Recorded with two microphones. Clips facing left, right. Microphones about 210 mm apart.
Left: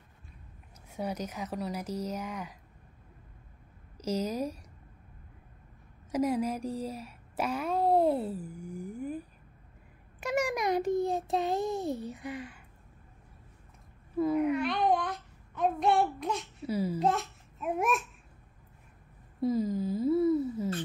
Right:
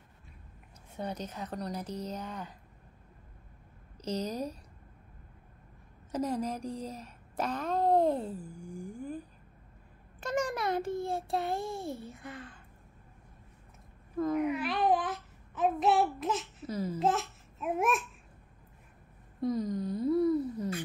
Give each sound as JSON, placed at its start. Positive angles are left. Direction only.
{"t": 0.9, "sound": "a child's voice", "side_deg": 10}
{"t": 4.0, "sound": "a child's voice", "side_deg": 10}
{"t": 6.1, "sound": "a woman's voice", "side_deg": 10}
{"t": 10.2, "sound": "a child's voice", "side_deg": 10}
{"t": 14.1, "sound": "speech", "side_deg": 10}
{"t": 14.4, "sound": "babbling", "side_deg": -5}
{"t": 16.6, "sound": "a child's voice", "side_deg": 10}
{"t": 17.0, "sound": "babbling", "side_deg": 0}
{"t": 19.4, "sound": "a sound", "side_deg": 5}